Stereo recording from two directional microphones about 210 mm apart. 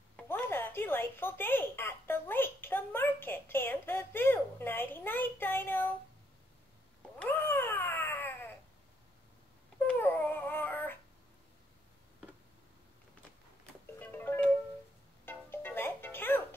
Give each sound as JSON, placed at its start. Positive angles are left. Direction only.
{"t": 0.1, "sound": "a sound", "side_deg": 10}
{"t": 7.2, "sound": "cat", "side_deg": 10}
{"t": 9.8, "sound": "dog", "side_deg": 10}
{"t": 13.9, "sound": "music", "side_deg": 10}